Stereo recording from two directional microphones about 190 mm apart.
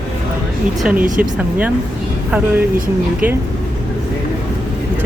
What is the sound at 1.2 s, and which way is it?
Speech, 10° right (ahead or behind).